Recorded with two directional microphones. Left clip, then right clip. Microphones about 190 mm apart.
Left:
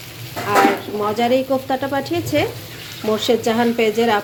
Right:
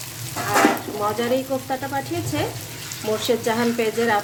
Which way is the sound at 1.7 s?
20° left (ahead or behind).